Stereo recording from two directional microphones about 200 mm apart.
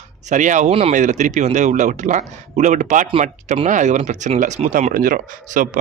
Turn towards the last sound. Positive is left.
turn(degrees=-40)  # may be behind; listen again after turning